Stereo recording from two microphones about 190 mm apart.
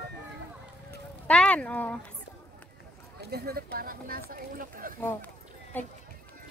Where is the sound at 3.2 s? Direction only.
55° right (ahead or behind).